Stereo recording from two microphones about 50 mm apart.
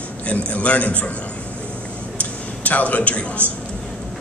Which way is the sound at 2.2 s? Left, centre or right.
Left.